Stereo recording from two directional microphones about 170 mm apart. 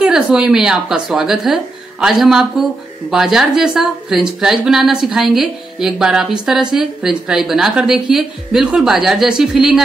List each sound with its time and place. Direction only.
0.0 s a woman's voice: 5° right (ahead or behind)